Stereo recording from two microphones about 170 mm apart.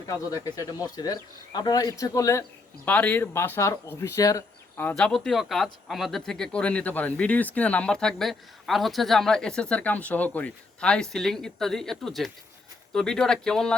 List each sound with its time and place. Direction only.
0.4 s speech: 20° left (ahead or behind); by 13.7 s 5° left (ahead or behind)